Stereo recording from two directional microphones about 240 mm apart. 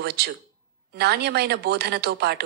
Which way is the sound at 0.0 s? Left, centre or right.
Right.